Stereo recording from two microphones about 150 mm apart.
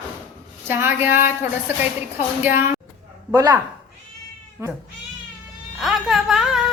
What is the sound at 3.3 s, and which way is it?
Speech, 25° right (ahead or behind).